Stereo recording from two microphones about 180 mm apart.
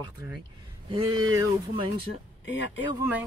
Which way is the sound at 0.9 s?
25° right (ahead or behind).